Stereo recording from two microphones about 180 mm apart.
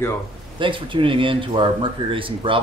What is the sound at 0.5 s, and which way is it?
Speech, 30° right (ahead or behind).